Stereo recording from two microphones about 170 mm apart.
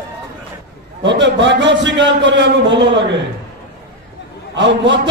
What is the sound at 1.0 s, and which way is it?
A man's voice, 90° right.